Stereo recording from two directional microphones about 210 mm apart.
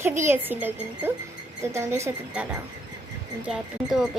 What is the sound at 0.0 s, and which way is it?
A woman's voice, 10° right (ahead or behind).